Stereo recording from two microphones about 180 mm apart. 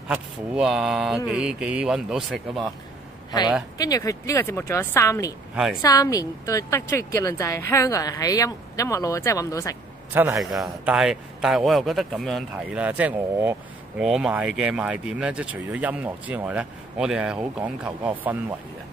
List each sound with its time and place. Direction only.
0.1 s speech: 5° right (ahead or behind)
3.3 s a woman's voice: 20° left (ahead or behind)
10.1 s speech: 15° right (ahead or behind)
10.4 s speech: centre (ahead or behind)